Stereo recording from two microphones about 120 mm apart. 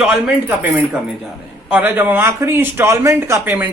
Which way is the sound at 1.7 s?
15° right (ahead or behind).